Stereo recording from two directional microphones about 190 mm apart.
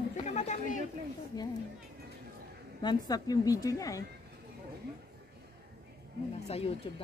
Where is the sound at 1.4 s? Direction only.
20° left (ahead or behind).